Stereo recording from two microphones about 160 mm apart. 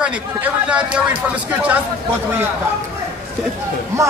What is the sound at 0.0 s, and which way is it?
Speech, 5° right (ahead or behind).